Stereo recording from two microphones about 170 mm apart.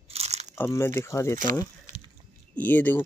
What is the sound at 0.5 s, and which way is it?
Speech, 15° left (ahead or behind).